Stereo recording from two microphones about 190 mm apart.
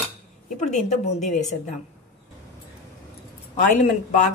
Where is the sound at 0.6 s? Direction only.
40° left (ahead or behind).